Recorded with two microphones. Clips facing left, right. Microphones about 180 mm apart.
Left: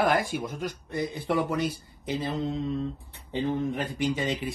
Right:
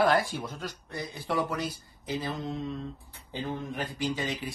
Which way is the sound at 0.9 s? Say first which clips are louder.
Left 5 dB; 20° left (ahead or behind).